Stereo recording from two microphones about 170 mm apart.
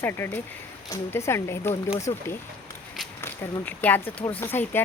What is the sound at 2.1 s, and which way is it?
Speech, 25° left (ahead or behind).